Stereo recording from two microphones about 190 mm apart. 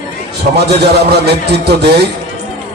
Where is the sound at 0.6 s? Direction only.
60° right (ahead or behind).